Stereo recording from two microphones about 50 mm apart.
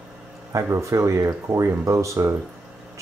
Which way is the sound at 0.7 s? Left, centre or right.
Right.